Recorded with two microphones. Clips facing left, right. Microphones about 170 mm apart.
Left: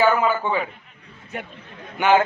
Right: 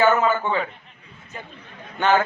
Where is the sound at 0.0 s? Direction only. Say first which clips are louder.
Even; 10° left (ahead or behind).